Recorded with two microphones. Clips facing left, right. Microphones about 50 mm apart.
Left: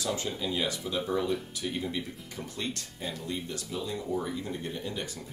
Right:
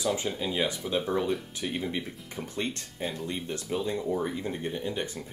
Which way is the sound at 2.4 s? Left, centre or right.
Right.